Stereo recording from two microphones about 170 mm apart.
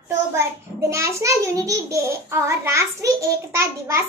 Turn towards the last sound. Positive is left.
turn(degrees=-15)  # may be behind; listen again after turning